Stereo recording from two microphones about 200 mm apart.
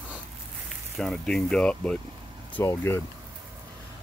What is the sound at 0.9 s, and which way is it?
Speech, centre (ahead or behind).